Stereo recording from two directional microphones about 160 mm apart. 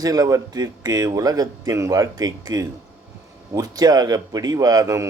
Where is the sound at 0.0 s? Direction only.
20° right (ahead or behind).